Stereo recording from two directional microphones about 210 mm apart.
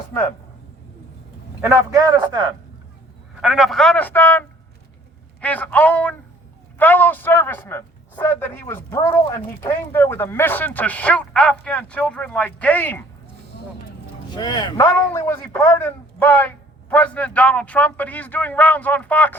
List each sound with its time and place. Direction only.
1.6 s a man's voice: 15° right (ahead or behind)
3.4 s a man's voice: centre (ahead or behind)
14.3 s a man's voice: 20° left (ahead or behind)